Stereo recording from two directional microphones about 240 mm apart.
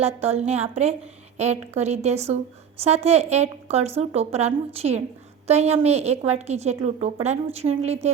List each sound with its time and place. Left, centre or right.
0.0 s a woman's voice: right